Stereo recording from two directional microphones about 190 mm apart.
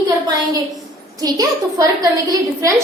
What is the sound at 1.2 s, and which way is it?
A woman's voice, 20° right (ahead or behind).